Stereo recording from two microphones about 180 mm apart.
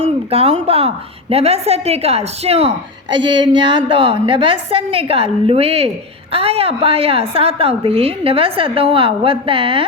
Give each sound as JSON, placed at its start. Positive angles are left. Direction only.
{"t": 0.0, "sound": "a woman's voice", "side_deg": -35}